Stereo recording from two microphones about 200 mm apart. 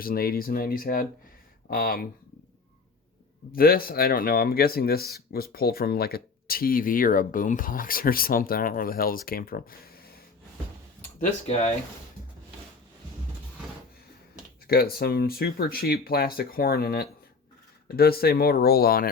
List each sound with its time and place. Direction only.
0.0 s speech: 45° left (ahead or behind)
3.5 s speech: 45° left (ahead or behind)
11.2 s speech: 35° left (ahead or behind)
14.7 s speech: 50° left (ahead or behind)